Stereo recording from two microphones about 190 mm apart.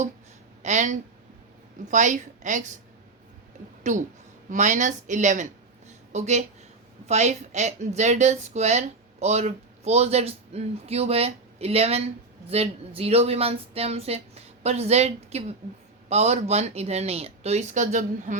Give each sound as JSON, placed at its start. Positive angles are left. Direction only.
{"t": 0.6, "sound": "a woman's voice", "side_deg": -40}
{"t": 3.9, "sound": "speech", "side_deg": -40}